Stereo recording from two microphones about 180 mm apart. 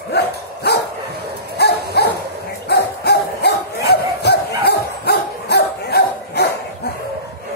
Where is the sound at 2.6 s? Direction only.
65° left (ahead or behind).